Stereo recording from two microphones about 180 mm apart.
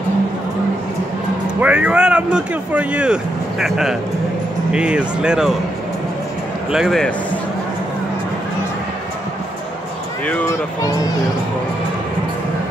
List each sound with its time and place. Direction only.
1.6 s speech: 5° right (ahead or behind)
6.7 s speech: centre (ahead or behind)
10.2 s speech: 10° left (ahead or behind)